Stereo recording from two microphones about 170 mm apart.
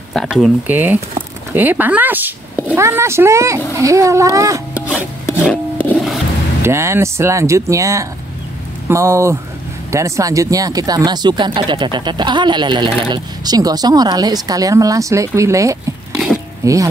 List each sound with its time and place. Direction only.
0.1 s speech: centre (ahead or behind)
0.7 s speech: 10° right (ahead or behind)
4.7 s rub: 5° right (ahead or behind)
5.4 s wood: 10° left (ahead or behind)
6.6 s speech: 15° right (ahead or behind)